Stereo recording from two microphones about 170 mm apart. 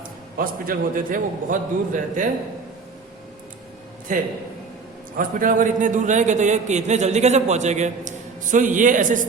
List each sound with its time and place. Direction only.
0.3 s a man's voice: 55° right (ahead or behind)
5.1 s a man's voice: 50° right (ahead or behind)